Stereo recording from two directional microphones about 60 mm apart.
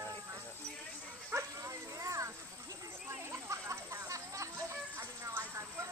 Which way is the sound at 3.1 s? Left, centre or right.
Right.